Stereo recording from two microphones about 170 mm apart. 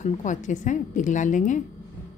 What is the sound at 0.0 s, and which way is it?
Speech, 45° left (ahead or behind).